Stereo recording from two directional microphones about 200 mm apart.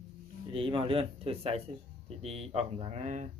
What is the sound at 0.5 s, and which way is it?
Speech, 25° right (ahead or behind).